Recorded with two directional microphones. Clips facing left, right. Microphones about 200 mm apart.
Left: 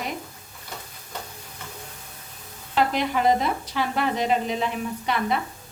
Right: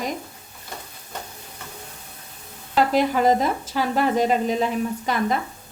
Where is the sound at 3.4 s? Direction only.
40° right (ahead or behind).